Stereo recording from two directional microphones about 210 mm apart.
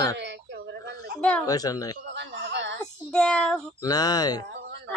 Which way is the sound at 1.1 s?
5° left (ahead or behind).